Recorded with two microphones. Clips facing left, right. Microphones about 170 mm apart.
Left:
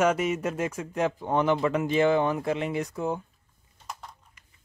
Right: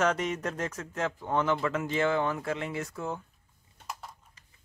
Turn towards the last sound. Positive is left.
turn(degrees=-5)  # may be behind; listen again after turning